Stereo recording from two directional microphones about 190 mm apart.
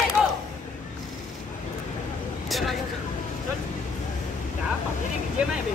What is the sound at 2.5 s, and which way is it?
Vehicle, centre (ahead or behind).